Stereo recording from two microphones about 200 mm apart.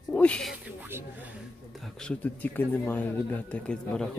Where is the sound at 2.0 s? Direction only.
10° left (ahead or behind).